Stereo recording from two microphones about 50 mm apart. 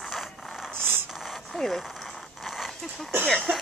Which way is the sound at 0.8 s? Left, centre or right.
Right.